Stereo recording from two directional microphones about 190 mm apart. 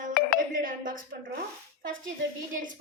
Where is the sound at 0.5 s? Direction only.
45° right (ahead or behind).